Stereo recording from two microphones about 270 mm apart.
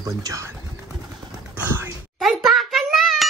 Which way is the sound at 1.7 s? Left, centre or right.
Centre.